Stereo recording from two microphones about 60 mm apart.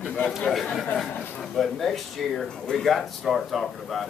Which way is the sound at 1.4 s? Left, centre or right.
Centre.